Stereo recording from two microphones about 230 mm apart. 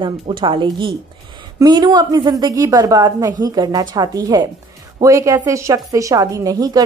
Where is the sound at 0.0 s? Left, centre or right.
Right.